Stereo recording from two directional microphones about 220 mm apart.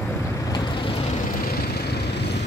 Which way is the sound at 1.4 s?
45° left (ahead or behind).